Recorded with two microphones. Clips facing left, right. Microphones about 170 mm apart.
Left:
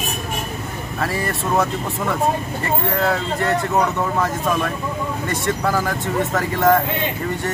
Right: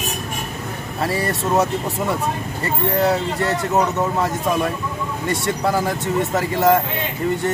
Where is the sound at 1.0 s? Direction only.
25° right (ahead or behind).